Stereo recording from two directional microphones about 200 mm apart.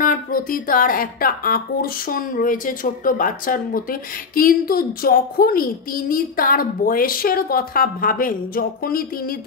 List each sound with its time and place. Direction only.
0.0 s speech: 45° left (ahead or behind)